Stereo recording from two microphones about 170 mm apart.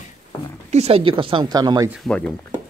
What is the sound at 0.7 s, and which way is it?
Speech, 35° right (ahead or behind).